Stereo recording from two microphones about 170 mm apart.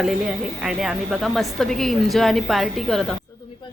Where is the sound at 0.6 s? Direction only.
5° right (ahead or behind).